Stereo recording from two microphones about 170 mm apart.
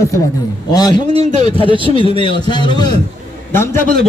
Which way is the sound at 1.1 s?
35° right (ahead or behind).